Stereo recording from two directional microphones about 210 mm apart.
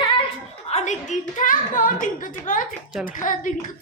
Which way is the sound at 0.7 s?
30° left (ahead or behind).